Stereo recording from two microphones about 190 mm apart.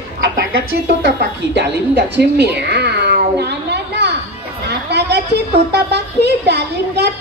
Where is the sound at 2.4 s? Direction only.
60° right (ahead or behind).